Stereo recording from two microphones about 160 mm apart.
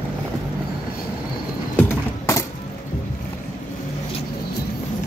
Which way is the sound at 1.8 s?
15° left (ahead or behind).